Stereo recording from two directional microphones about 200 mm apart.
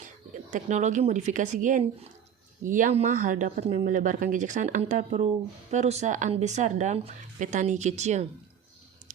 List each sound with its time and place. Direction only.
0.0 s speech: 40° right (ahead or behind)